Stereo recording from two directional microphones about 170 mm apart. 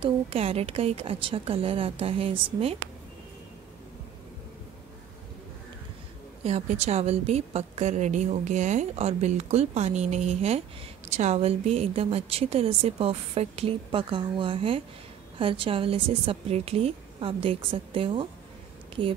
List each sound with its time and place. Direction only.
0.0 s a woman's voice: 35° right (ahead or behind)
6.4 s a woman's voice: 40° right (ahead or behind)